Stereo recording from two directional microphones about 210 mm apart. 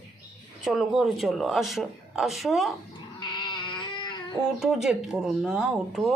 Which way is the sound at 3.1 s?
20° left (ahead or behind).